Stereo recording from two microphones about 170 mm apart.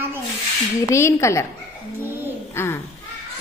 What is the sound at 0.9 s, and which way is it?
Speech, 15° left (ahead or behind).